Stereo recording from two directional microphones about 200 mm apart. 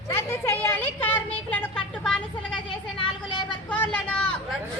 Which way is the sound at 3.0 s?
25° left (ahead or behind).